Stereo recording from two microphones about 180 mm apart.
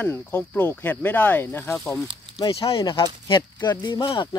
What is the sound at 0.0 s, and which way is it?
Speech, 10° left (ahead or behind).